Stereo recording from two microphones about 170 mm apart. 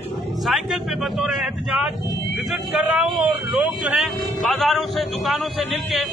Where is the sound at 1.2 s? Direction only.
5° right (ahead or behind).